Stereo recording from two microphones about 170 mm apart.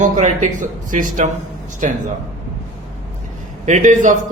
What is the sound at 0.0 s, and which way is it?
Speech, 45° right (ahead or behind).